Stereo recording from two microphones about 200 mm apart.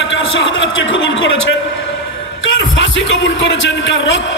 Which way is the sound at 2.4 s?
75° left (ahead or behind).